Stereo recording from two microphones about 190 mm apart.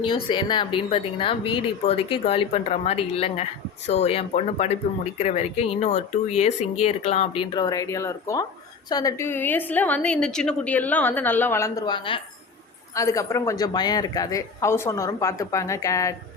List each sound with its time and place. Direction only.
0.0 s speech: 25° left (ahead or behind)
7.5 s a woman's voice: 20° left (ahead or behind)